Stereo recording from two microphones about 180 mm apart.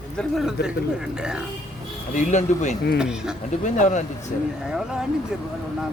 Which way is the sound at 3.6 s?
45° left (ahead or behind).